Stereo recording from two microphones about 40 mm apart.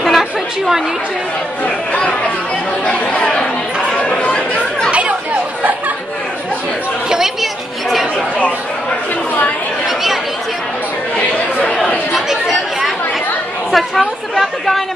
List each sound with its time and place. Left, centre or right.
0.0 s chatter: centre
2.8 s chatter: left
11.1 s chatter: left
12.3 s chatter: centre